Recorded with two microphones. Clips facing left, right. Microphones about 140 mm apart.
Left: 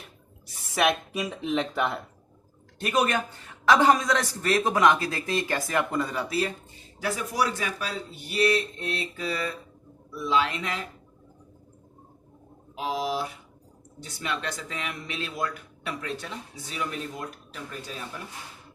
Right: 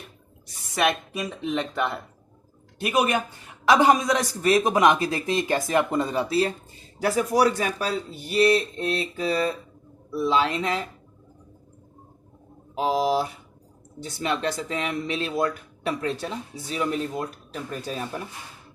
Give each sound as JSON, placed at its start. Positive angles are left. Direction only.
{"t": 0.4, "sound": "speech", "side_deg": 5}
{"t": 2.7, "sound": "a man's voice", "side_deg": -10}
{"t": 12.7, "sound": "speech", "side_deg": -35}